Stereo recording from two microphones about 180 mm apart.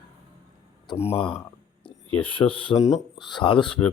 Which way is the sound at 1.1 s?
35° left (ahead or behind).